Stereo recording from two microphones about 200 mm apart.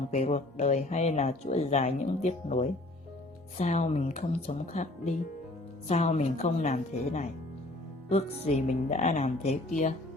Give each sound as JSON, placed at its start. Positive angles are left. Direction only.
{"t": 0.1, "sound": "speech", "side_deg": 35}